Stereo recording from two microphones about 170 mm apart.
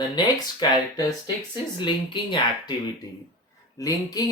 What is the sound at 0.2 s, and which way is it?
Speech, 25° left (ahead or behind).